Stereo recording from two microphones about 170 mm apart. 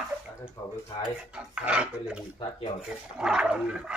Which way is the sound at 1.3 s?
5° right (ahead or behind).